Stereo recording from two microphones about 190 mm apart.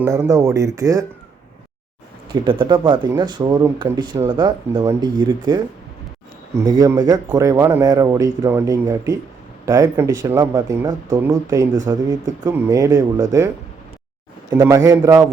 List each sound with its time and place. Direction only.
0.0 s speech: 15° right (ahead or behind)
2.3 s speech: 25° right (ahead or behind)
6.7 s speech: 20° right (ahead or behind)
14.5 s speech: 15° right (ahead or behind)